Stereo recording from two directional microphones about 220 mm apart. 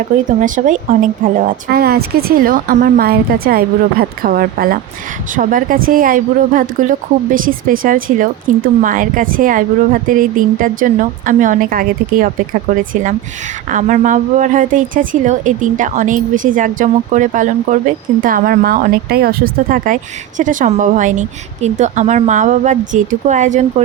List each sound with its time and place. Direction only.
0.3 s a woman's voice: 35° right (ahead or behind)